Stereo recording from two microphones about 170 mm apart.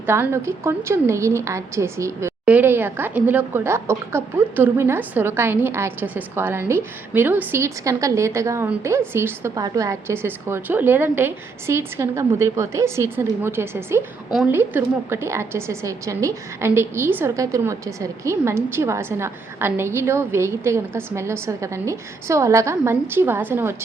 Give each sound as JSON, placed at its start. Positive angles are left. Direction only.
{"t": 0.0, "sound": "speech", "side_deg": -15}